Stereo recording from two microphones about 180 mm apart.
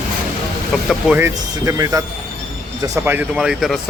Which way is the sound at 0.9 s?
10° right (ahead or behind).